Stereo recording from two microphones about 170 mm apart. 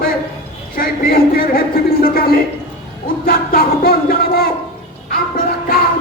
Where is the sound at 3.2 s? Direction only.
60° left (ahead or behind).